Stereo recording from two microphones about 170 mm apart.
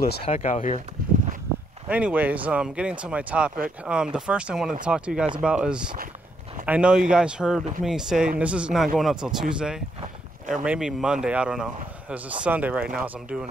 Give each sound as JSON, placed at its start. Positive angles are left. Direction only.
{"t": 0.2, "sound": "speech", "side_deg": 40}
{"t": 1.9, "sound": "speech", "side_deg": -10}